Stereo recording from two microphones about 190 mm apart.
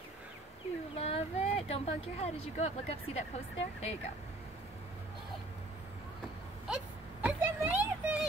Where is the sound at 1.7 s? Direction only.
35° left (ahead or behind).